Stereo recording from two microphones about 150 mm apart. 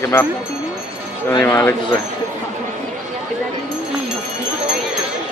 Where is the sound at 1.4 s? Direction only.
20° left (ahead or behind).